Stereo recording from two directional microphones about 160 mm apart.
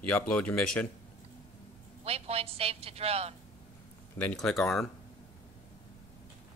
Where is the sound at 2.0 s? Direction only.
40° right (ahead or behind).